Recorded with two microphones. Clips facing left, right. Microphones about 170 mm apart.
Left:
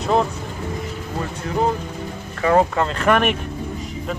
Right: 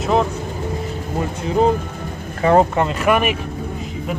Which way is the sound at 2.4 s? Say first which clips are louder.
Right 3 dB; 30° right (ahead or behind).